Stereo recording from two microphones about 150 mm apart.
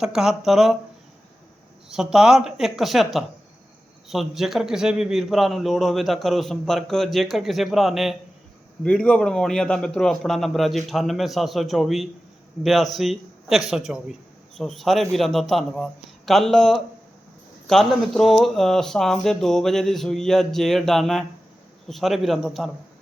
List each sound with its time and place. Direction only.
0.0 s a man's voice: 5° right (ahead or behind)
1.9 s a man's voice: 5° right (ahead or behind)